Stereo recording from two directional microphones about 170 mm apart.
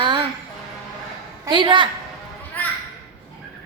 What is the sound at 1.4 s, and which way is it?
Speech, 25° right (ahead or behind).